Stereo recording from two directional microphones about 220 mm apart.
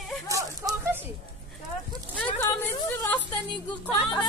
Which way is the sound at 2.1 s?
10° left (ahead or behind).